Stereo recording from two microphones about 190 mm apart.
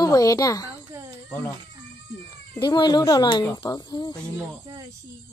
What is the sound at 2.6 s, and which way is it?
Speech, 25° left (ahead or behind).